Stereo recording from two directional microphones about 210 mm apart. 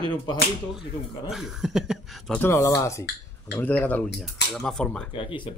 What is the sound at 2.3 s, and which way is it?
Speech, 15° left (ahead or behind).